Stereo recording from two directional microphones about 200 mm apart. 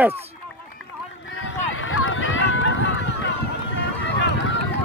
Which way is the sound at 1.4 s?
80° left.